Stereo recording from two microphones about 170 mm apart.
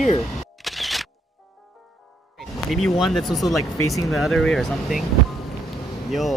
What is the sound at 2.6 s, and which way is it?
Speech, centre (ahead or behind).